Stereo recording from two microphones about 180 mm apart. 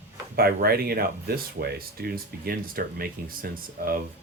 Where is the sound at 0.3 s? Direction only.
60° right (ahead or behind).